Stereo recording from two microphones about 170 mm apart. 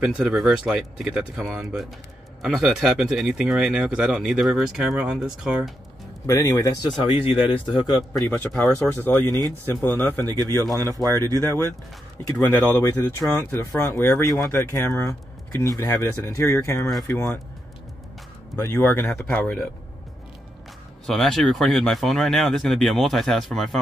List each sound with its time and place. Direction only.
0.2 s speech: 5° right (ahead or behind)
6.2 s a man's voice: 20° left (ahead or behind)
7.2 s speech: 30° left (ahead or behind); by 10.2 s 10° left (ahead or behind)
10.2 s speech: 20° right (ahead or behind)
12.4 s speech: 10° left (ahead or behind)
18.6 s speech: 15° left (ahead or behind)
21.1 s speech: centre (ahead or behind)